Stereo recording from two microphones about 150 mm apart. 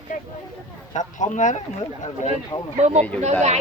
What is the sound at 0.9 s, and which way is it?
Speech, 55° left (ahead or behind).